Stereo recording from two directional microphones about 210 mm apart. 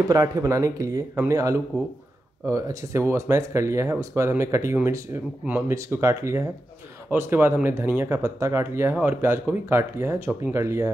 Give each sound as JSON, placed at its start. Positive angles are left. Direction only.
{"t": 0.1, "sound": "speech", "side_deg": -20}